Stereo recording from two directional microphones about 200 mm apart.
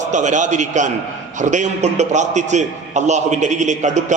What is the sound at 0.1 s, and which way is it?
Speech, 35° right (ahead or behind).